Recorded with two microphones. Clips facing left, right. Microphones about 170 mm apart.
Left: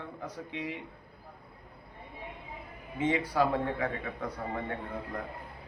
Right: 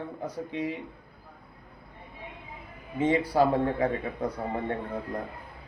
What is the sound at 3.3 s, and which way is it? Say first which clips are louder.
Speech: right 5 dB; 35° right (ahead or behind).